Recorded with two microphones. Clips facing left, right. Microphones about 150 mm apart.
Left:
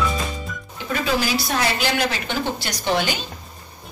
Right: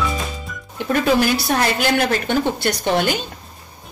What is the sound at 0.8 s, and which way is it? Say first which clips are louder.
A woman's voice: right 6 dB; 55° right (ahead or behind).